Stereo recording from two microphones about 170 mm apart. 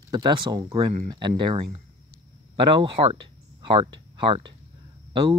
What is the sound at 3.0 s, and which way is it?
Speech, 40° right (ahead or behind).